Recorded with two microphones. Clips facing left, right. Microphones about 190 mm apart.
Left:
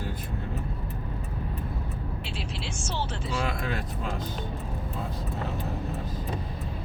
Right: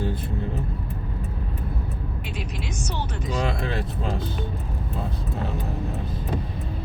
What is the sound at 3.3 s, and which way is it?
Speech, 30° right (ahead or behind).